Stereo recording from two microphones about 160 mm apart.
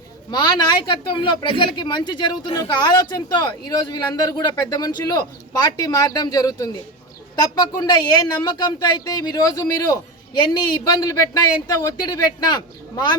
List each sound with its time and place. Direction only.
0.3 s speech: 25° left (ahead or behind)